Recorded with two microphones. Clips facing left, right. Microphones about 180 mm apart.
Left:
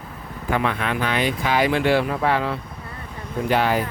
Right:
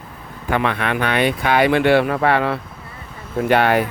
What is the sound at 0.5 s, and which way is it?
Speech, 70° right (ahead or behind).